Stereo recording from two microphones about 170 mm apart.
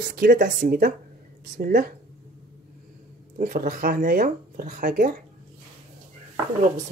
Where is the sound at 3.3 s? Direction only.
55° right (ahead or behind).